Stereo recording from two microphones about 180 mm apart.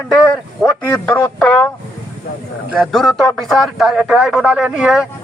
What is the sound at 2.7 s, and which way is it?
Speech, centre (ahead or behind).